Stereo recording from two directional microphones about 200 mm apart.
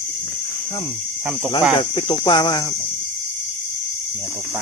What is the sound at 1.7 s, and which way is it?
Cricket, 25° left (ahead or behind).